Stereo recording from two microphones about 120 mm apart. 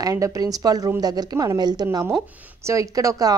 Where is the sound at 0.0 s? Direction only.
30° right (ahead or behind).